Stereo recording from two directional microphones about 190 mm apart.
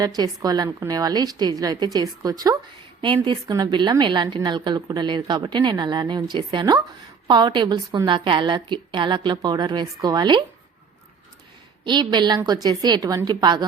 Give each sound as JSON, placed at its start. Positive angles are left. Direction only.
{"t": 0.0, "sound": "a woman's voice", "side_deg": -20}
{"t": 11.9, "sound": "a woman's voice", "side_deg": -25}